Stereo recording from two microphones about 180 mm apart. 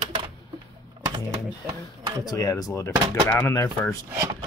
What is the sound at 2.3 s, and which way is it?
Speech, 20° left (ahead or behind).